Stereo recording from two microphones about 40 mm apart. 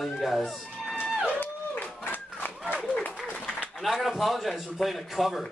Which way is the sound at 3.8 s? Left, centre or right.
Centre.